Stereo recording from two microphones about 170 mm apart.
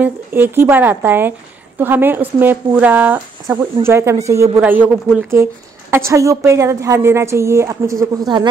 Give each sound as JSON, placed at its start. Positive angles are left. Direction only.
{"t": 0.0, "sound": "a woman's voice", "side_deg": -10}